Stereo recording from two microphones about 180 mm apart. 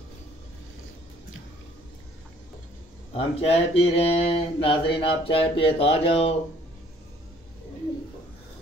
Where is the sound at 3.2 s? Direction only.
35° left (ahead or behind).